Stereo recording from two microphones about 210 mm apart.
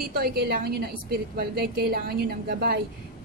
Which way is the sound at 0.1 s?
50° right (ahead or behind).